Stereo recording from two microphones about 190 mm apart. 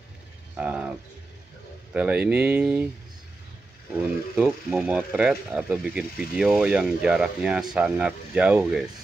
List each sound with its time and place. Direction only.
0.6 s speech: 5° right (ahead or behind)
2.0 s speech: 5° right (ahead or behind)
4.4 s speech: 5° right (ahead or behind)